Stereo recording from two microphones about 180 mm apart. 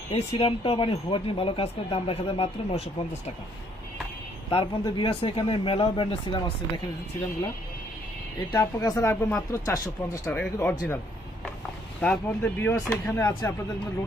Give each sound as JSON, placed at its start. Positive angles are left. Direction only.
{"t": 0.1, "sound": "speech", "side_deg": 30}
{"t": 4.5, "sound": "speech", "side_deg": 25}
{"t": 8.5, "sound": "speech", "side_deg": 20}
{"t": 10.2, "sound": "speech", "side_deg": 5}